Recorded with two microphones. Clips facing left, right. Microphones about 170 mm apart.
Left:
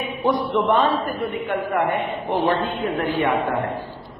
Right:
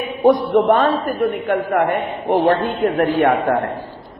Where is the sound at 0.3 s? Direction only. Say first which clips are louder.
Right 7 dB; 50° right (ahead or behind).